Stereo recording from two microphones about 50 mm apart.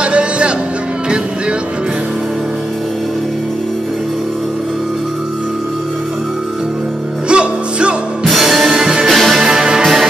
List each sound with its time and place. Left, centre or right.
0.0 s music: right
7.2 s music: right
8.2 s music: centre
9.1 s music: centre
9.4 s music: centre